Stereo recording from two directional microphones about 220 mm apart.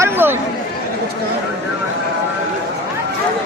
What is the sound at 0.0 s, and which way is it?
Speech, 10° right (ahead or behind).